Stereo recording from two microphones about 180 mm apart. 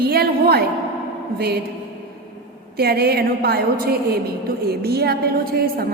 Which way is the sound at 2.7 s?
60° right (ahead or behind).